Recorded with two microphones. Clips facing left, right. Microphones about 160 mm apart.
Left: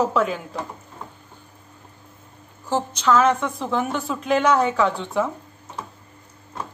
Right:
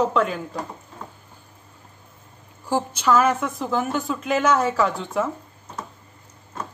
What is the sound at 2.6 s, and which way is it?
Speech, 10° right (ahead or behind).